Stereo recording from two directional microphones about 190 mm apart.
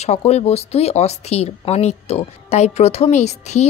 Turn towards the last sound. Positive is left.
turn(degrees=35)  # may be behind; listen again after turning